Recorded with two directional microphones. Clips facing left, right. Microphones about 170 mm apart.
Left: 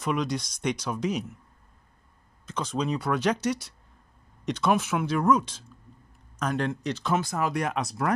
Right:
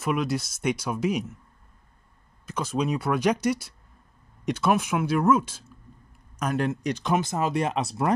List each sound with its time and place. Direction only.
0.0 s speech: 5° right (ahead or behind)
2.4 s speech: 10° right (ahead or behind); by 8.1 s 25° right (ahead or behind)